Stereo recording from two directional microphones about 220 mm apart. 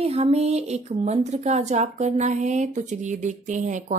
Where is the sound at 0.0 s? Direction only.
30° right (ahead or behind).